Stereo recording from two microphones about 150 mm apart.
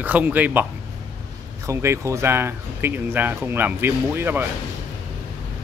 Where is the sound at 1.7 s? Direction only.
20° right (ahead or behind).